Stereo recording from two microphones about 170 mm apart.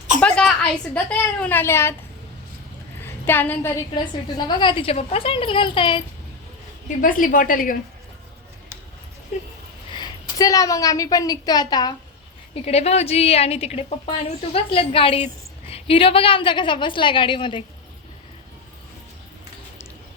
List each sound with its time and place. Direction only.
0.2 s a woman's voice: 5° left (ahead or behind)
3.0 s a sound: 10° left (ahead or behind)
3.9 s a woman's voice: 25° left (ahead or behind)
6.8 s a woman's voice: 55° left (ahead or behind)
10.0 s a woman's voice: 20° left (ahead or behind)
12.6 s a woman's voice: 40° left (ahead or behind)